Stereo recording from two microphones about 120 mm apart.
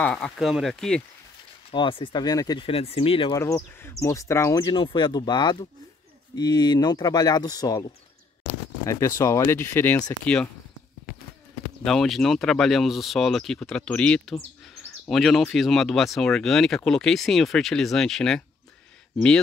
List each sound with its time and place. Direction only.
0.0 s speech: 10° left (ahead or behind)
1.7 s speech: 45° left (ahead or behind)
2.6 s speech: 55° left (ahead or behind)
3.3 s speech: 20° left (ahead or behind)
4.7 s speech: 40° left (ahead or behind); by 10.5 s 10° left (ahead or behind)
11.8 s speech: 5° left (ahead or behind)